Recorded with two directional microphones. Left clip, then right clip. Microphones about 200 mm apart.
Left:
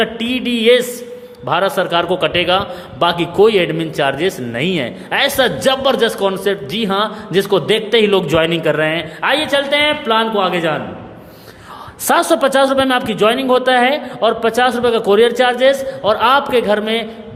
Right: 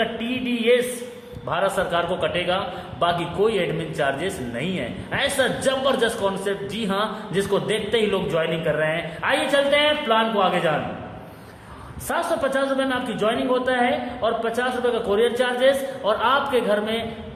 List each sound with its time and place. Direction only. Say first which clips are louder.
0.0 s a sound: left 7 dB; 50° left (ahead or behind)
1.5 s a man's voice: left 7 dB; 40° left (ahead or behind)
12.0 s a man's voice: left 10 dB; 50° left (ahead or behind)